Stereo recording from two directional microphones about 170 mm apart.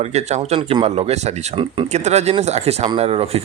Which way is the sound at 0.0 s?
40° right (ahead or behind).